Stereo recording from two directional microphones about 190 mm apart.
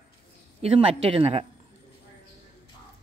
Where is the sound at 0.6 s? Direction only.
30° right (ahead or behind).